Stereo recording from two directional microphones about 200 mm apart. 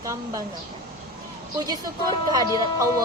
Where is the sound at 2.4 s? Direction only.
20° left (ahead or behind).